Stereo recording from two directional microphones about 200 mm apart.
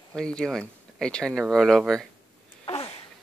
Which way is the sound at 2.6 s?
30° left (ahead or behind).